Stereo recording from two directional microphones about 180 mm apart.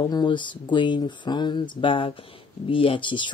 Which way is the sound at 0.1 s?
25° left (ahead or behind).